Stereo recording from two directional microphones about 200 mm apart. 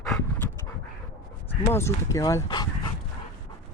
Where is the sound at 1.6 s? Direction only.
15° left (ahead or behind).